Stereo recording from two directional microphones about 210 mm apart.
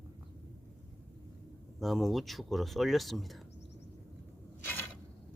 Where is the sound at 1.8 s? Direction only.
Centre (ahead or behind).